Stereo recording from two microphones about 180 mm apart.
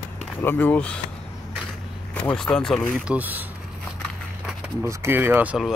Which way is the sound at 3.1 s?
10° right (ahead or behind).